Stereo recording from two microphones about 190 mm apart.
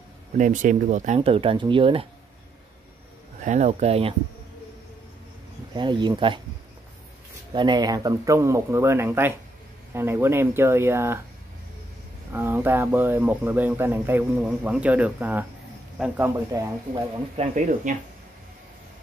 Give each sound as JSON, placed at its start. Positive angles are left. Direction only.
{"t": 0.4, "sound": "speech", "side_deg": -40}
{"t": 3.4, "sound": "speech", "side_deg": -40}
{"t": 5.8, "sound": "speech", "side_deg": -25}
{"t": 7.5, "sound": "speech", "side_deg": -25}
{"t": 12.3, "sound": "speech", "side_deg": -10}
{"t": 17.4, "sound": "speech", "side_deg": -40}